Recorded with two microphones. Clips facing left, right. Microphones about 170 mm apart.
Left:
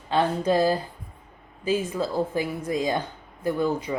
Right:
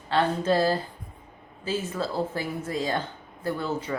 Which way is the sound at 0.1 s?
15° left (ahead or behind).